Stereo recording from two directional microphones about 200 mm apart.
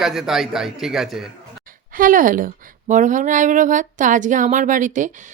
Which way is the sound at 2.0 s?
45° right (ahead or behind).